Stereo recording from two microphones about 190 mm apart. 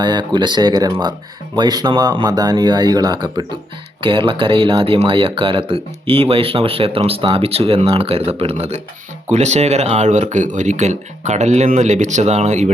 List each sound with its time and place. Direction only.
0.0 s speech: 25° right (ahead or behind)